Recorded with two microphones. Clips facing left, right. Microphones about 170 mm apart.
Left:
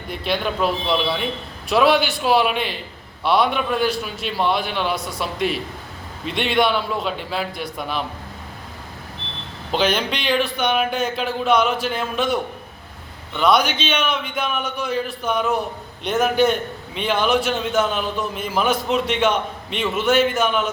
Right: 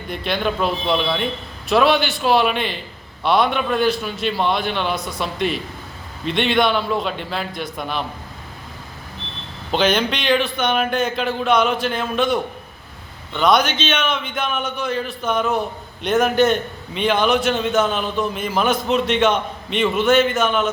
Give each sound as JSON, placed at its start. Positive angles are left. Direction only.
{"t": 0.1, "sound": "a man's voice", "side_deg": 5}
{"t": 9.7, "sound": "a man's voice", "side_deg": 5}
{"t": 13.4, "sound": "a man's voice", "side_deg": 5}